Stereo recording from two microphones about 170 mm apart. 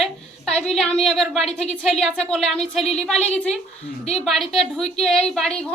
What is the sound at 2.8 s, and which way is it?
Speech, 40° left (ahead or behind).